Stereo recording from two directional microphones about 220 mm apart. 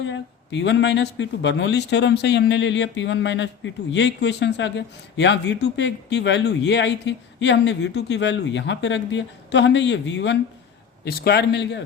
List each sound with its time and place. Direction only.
0.0 s speech: 55° left (ahead or behind)